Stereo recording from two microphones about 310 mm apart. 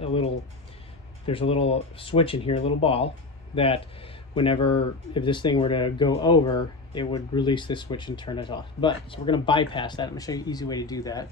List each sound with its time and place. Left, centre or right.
0.0 s music: centre
1.2 s speech: centre